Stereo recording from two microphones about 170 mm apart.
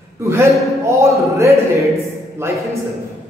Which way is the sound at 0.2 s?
15° right (ahead or behind).